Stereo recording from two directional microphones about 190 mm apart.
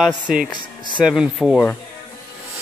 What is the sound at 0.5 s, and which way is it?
Speech, 25° right (ahead or behind).